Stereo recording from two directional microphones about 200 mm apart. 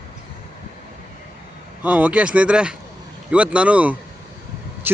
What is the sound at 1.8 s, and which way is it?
Speech, 5° right (ahead or behind).